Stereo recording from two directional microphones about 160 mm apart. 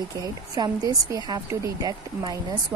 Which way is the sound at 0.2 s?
25° right (ahead or behind).